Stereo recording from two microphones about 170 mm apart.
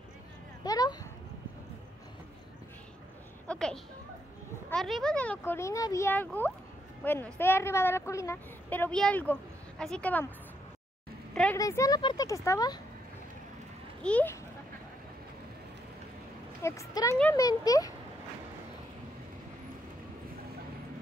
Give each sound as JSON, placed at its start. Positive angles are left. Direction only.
{"t": 0.7, "sound": "a sound", "side_deg": 20}
{"t": 3.4, "sound": "a sound", "side_deg": 5}
{"t": 4.6, "sound": "a woman's voice", "side_deg": 0}
{"t": 11.5, "sound": "speech", "side_deg": 20}
{"t": 14.0, "sound": "a woman's voice", "side_deg": 10}
{"t": 16.6, "sound": "speech", "side_deg": 20}